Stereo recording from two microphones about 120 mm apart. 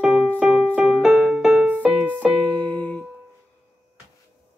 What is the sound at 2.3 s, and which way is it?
Music, 10° left (ahead or behind).